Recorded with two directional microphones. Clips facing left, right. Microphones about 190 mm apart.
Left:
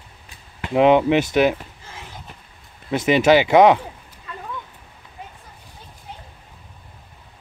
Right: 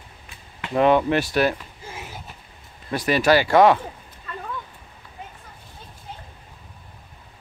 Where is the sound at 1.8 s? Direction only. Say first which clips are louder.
Right 5 dB; 10° right (ahead or behind).